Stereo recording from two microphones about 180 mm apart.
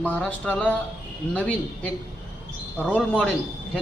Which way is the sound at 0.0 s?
10° left (ahead or behind).